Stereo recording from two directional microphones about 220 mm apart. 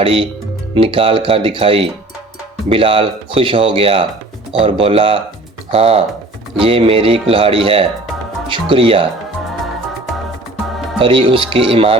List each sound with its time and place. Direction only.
0.0 s speech: 25° right (ahead or behind)
10.9 s speech: 25° right (ahead or behind)